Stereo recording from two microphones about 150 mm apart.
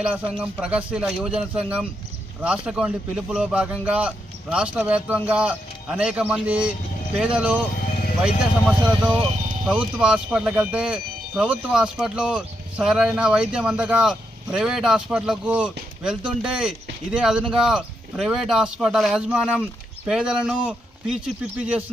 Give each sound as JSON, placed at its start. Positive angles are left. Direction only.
{"t": 0.0, "sound": "a man's voice", "side_deg": -5}
{"t": 9.0, "sound": "speech", "side_deg": -40}
{"t": 10.0, "sound": "speech", "side_deg": -5}